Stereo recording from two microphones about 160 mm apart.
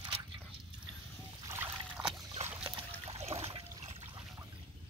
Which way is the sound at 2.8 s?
40° right (ahead or behind).